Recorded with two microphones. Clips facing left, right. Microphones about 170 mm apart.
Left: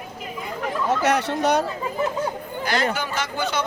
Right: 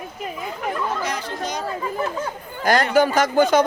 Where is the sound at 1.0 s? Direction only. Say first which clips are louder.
Left 6 dB; 70° left (ahead or behind).